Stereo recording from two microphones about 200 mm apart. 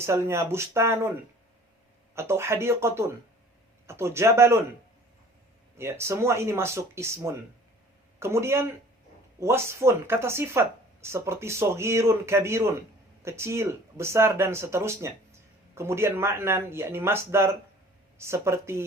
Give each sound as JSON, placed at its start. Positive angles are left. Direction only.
{"t": 0.0, "sound": "speech", "side_deg": -15}
{"t": 2.1, "sound": "speech", "side_deg": -15}
{"t": 5.7, "sound": "speech", "side_deg": -15}